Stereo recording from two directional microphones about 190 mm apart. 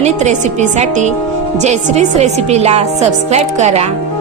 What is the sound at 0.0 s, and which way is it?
A woman's voice, 35° right (ahead or behind).